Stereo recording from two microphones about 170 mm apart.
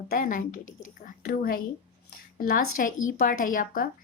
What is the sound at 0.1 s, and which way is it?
Speech, 50° left (ahead or behind).